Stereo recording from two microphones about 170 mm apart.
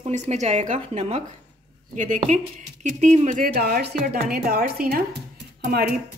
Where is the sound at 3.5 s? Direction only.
65° right (ahead or behind).